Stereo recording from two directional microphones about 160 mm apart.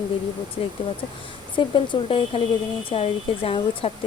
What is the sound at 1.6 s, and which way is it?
Speech, 35° left (ahead or behind).